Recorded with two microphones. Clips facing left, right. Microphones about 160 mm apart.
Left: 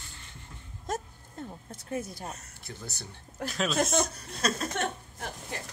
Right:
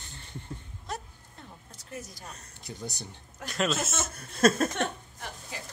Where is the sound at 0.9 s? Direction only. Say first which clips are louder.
Left 4 dB; 45° left (ahead or behind).